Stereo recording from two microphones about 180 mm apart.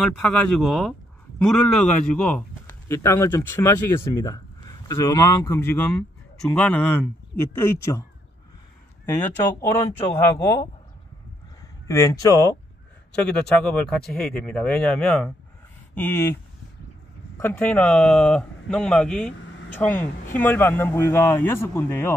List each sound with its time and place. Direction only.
0.6 s speech: centre (ahead or behind)
9.0 s speech: 15° left (ahead or behind)
11.9 s speech: 15° left (ahead or behind)
13.1 s speech: 5° left (ahead or behind)
17.4 s speech: 10° left (ahead or behind)